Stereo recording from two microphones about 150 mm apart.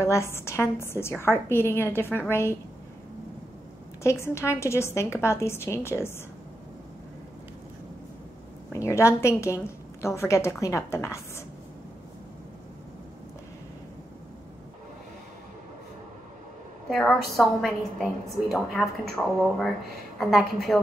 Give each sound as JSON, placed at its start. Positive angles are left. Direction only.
{"t": 0.0, "sound": "a woman's voice", "side_deg": 20}
{"t": 4.0, "sound": "a woman's voice", "side_deg": 20}
{"t": 8.7, "sound": "a woman's voice", "side_deg": 20}
{"t": 16.9, "sound": "speech", "side_deg": 5}